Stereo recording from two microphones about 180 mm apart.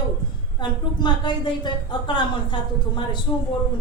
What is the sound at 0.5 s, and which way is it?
A woman's voice, 25° left (ahead or behind).